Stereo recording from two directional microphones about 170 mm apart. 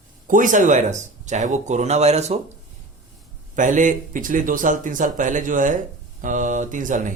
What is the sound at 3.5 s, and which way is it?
A man's voice, 50° right (ahead or behind).